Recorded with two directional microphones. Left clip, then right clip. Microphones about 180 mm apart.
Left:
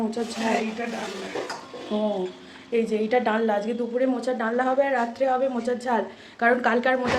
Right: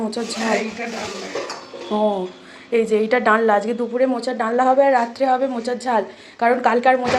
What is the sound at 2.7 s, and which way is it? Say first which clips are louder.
Speech: right 5 dB; 20° right (ahead or behind).